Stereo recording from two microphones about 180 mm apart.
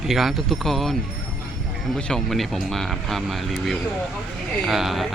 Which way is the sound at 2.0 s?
5° left (ahead or behind).